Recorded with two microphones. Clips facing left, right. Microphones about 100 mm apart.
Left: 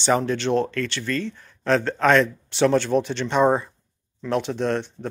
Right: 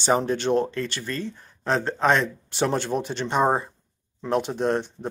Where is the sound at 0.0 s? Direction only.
35° right (ahead or behind).